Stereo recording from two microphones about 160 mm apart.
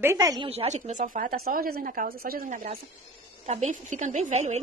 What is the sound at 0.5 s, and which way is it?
Speech, 45° right (ahead or behind).